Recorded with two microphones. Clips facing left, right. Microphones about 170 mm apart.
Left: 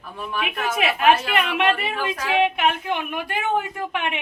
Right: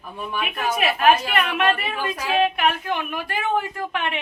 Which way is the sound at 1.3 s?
20° left (ahead or behind).